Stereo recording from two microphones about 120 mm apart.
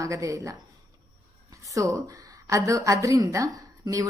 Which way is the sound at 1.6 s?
30° right (ahead or behind).